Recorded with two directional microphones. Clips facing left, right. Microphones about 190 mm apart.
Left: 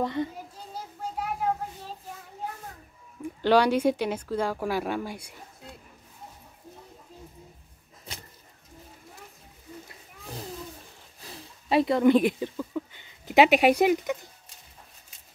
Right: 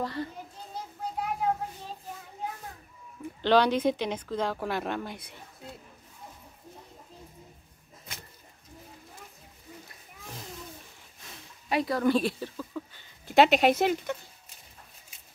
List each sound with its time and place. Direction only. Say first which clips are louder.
0.0 s a child's voice: left 5 dB; 20° left (ahead or behind)
1.1 s a sound: even; 5° left (ahead or behind)
3.4 s speech: left 2 dB; 10° left (ahead or behind)
11.1 s speech: left 6 dB; 35° left (ahead or behind); by 14.1 s 15° left (ahead or behind)